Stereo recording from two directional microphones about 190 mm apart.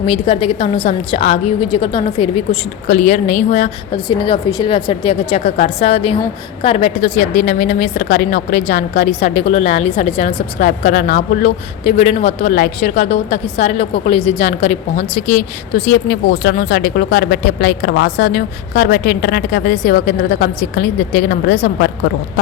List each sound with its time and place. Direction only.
0.0 s a woman's voice: 30° left (ahead or behind)
3.9 s a woman's voice: 25° left (ahead or behind)
12.5 s a woman's voice: 50° left (ahead or behind)